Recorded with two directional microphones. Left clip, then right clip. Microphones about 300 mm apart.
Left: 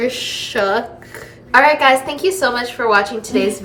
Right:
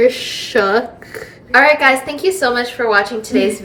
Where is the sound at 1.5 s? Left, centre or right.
Centre.